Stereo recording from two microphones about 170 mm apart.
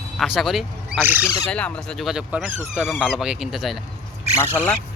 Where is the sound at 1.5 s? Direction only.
5° left (ahead or behind).